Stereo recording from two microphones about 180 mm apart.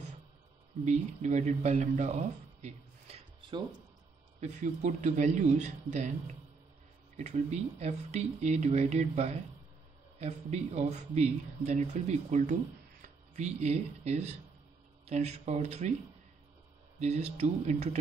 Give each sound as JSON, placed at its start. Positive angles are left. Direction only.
{"t": 0.8, "sound": "speech", "side_deg": -40}
{"t": 3.3, "sound": "a sound", "side_deg": -25}
{"t": 4.4, "sound": "speech", "side_deg": -40}
{"t": 7.2, "sound": "speech", "side_deg": -40}
{"t": 17.0, "sound": "speech", "side_deg": -35}